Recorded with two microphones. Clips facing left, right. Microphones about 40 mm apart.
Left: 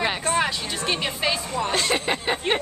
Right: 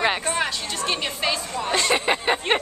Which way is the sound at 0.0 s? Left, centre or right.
Centre.